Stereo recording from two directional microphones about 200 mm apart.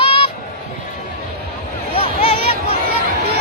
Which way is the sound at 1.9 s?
30° left (ahead or behind).